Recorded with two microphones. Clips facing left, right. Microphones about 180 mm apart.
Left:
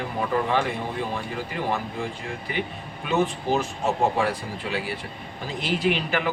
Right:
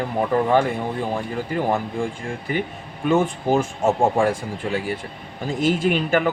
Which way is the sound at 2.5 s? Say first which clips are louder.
Right 5 dB; 45° right (ahead or behind).